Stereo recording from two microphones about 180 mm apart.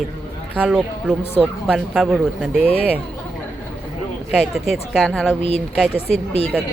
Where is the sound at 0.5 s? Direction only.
5° right (ahead or behind).